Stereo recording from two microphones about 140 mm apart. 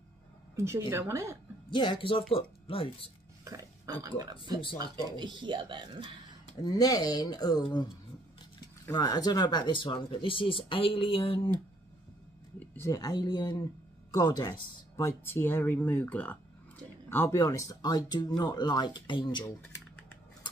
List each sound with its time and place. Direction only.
0.6 s a woman's voice: 20° right (ahead or behind)
1.7 s speech: 35° left (ahead or behind)
3.4 s speech: 25° right (ahead or behind)
6.6 s speech: 25° left (ahead or behind)
12.5 s a sound: 15° left (ahead or behind)
12.9 s speech: 25° left (ahead or behind)